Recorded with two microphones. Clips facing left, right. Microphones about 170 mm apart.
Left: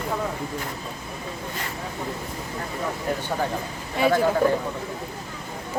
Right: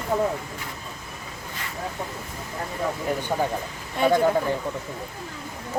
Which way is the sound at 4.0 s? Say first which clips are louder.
Even; 5° left (ahead or behind).